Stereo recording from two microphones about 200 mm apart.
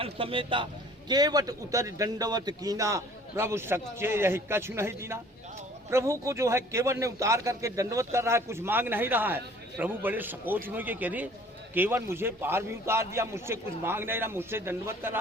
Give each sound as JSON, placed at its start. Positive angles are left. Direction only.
{"t": 0.0, "sound": "a man's voice", "side_deg": -25}